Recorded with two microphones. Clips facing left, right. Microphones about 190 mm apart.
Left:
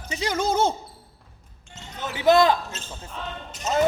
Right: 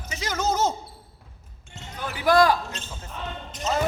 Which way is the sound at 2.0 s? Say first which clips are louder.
Left 2 dB; 25° left (ahead or behind).